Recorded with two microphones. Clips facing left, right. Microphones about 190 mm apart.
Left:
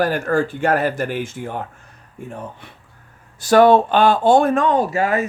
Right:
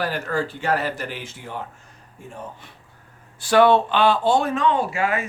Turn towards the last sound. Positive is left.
turn(degrees=40)  # may be behind; listen again after turning